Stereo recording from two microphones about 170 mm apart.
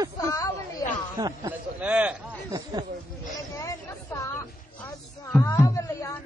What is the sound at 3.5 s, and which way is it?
A man's voice, 20° left (ahead or behind).